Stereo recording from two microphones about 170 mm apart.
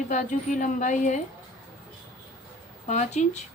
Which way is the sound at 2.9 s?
45° left (ahead or behind).